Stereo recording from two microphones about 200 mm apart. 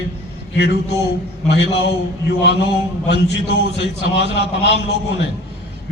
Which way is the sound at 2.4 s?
60° left (ahead or behind).